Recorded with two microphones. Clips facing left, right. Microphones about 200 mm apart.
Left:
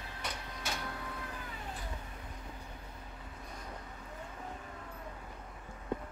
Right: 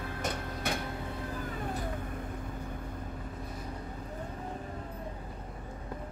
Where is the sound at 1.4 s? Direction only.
50° right (ahead or behind).